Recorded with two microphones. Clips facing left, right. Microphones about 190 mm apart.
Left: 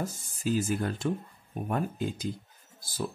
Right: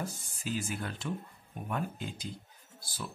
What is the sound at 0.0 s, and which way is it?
Speech, 40° left (ahead or behind).